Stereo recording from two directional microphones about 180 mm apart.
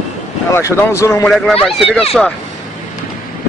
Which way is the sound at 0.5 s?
15° left (ahead or behind).